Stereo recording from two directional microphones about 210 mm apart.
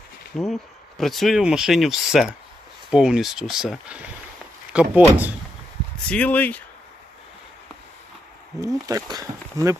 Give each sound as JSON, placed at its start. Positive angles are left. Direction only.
{"t": 0.3, "sound": "speech", "side_deg": 0}
{"t": 6.1, "sound": "speech", "side_deg": 5}
{"t": 8.6, "sound": "speech", "side_deg": -15}